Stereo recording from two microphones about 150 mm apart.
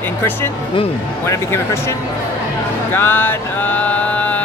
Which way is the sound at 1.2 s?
20° left (ahead or behind).